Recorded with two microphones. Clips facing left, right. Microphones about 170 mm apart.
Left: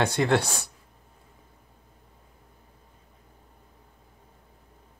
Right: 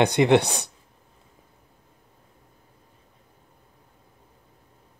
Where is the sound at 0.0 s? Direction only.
20° right (ahead or behind).